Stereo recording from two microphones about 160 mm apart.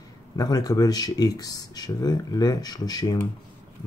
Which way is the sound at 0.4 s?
25° left (ahead or behind).